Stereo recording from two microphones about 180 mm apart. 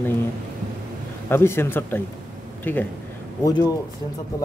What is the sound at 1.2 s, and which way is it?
Speech, 15° left (ahead or behind).